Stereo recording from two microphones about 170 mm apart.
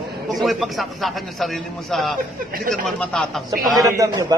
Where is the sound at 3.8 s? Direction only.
20° right (ahead or behind).